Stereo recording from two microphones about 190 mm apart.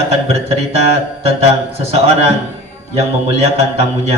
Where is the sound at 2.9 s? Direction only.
35° right (ahead or behind).